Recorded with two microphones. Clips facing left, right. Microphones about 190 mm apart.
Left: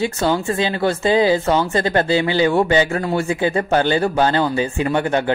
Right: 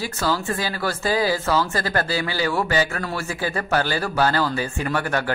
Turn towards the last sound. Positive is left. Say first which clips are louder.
# left 6 dB
turn(degrees=25)  # may be behind; listen again after turning